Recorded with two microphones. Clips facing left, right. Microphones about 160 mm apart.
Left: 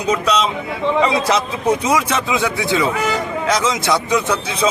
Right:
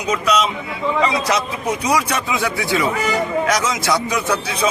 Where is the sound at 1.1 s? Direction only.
30° left (ahead or behind).